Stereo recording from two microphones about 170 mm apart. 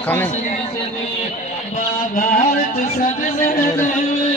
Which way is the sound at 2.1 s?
50° left (ahead or behind).